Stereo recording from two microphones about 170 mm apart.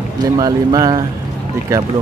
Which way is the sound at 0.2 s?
25° right (ahead or behind).